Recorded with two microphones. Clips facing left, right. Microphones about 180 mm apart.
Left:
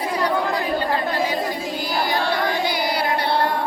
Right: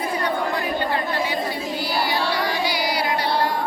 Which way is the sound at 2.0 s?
50° left (ahead or behind).